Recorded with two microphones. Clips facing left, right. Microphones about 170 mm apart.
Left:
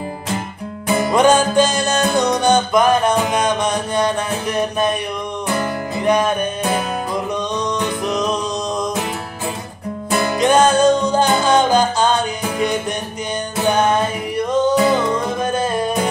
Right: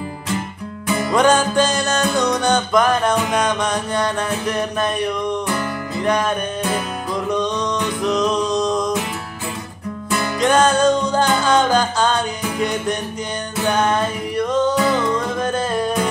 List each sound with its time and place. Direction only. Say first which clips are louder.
0.8 s music: left 3 dB; 40° left (ahead or behind)
1.1 s music: left 2 dB; 15° left (ahead or behind)
6.0 s music: left 3 dB; 15° left (ahead or behind)
8.0 s music: right 2 dB; 10° left (ahead or behind)
10.4 s music: left 2 dB; 15° left (ahead or behind)